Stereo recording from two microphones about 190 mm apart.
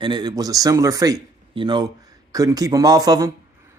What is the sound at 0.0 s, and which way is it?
Speech, 25° right (ahead or behind).